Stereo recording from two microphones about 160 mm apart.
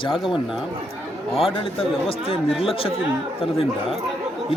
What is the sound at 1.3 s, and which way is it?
Speech, 35° left (ahead or behind).